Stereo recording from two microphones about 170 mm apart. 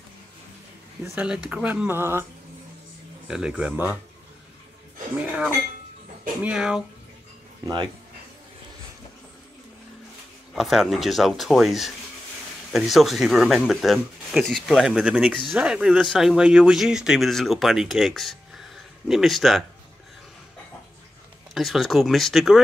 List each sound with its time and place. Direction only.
1.0 s speech: 5° right (ahead or behind)
3.3 s speech: 5° right (ahead or behind)
5.1 s speech: 5° right (ahead or behind)
7.6 s speech: 25° right (ahead or behind)
10.5 s speech: centre (ahead or behind)
21.5 s speech: centre (ahead or behind)